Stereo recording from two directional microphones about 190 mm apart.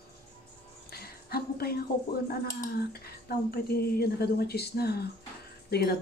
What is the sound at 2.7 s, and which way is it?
Speech, 55° left (ahead or behind).